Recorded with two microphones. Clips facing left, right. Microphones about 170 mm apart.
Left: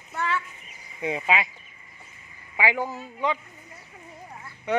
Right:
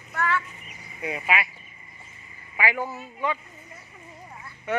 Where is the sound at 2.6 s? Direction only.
15° left (ahead or behind).